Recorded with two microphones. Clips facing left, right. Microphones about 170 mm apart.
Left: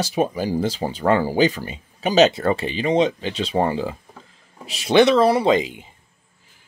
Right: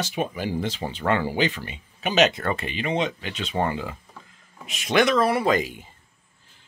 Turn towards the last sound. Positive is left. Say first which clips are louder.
# left 4 dB
turn(degrees=20)  # may be behind; listen again after turning